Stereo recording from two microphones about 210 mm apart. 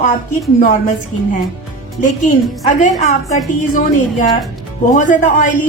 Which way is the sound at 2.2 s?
35° left (ahead or behind).